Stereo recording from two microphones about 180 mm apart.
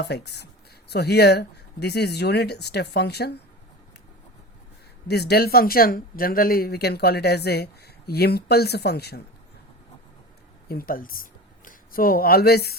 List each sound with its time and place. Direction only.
0.0 s speech: 65° left (ahead or behind)
5.0 s speech: 65° left (ahead or behind)
10.7 s speech: 55° left (ahead or behind)